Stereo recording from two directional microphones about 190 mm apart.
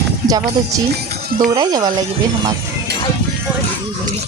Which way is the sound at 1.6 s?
20° right (ahead or behind).